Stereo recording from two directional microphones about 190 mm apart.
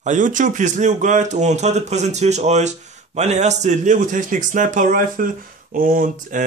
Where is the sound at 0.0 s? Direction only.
40° right (ahead or behind).